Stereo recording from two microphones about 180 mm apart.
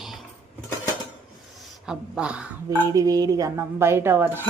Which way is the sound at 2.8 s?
20° right (ahead or behind).